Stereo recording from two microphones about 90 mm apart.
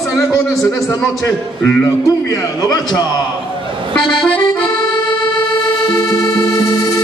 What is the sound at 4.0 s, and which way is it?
Accordion, 60° left (ahead or behind).